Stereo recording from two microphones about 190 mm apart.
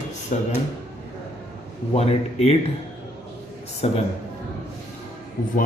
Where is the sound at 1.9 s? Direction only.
35° left (ahead or behind).